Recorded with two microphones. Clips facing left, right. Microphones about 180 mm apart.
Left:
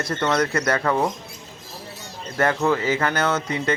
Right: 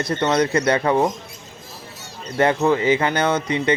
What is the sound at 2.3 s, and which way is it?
Speech, 15° right (ahead or behind).